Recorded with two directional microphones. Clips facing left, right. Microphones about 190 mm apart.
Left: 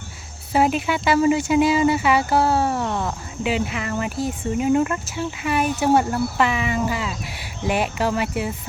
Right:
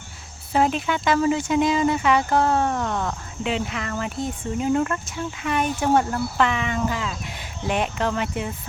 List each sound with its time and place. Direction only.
0.5 s speech: 10° left (ahead or behind)